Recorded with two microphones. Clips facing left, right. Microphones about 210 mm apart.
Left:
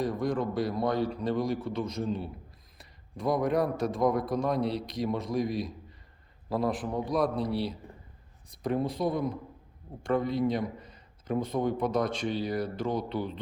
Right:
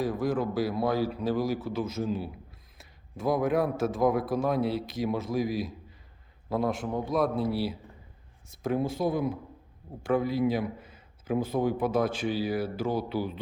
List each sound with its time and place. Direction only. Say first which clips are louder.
0.0 s speech: right 1 dB; centre (ahead or behind)